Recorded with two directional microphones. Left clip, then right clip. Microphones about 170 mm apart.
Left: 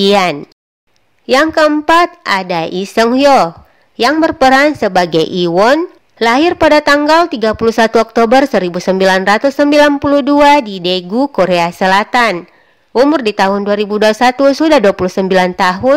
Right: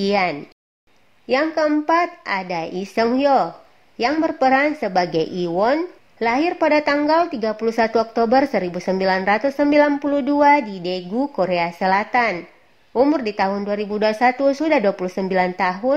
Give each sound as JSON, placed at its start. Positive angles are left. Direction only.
{"t": 0.0, "sound": "a woman's voice", "side_deg": 25}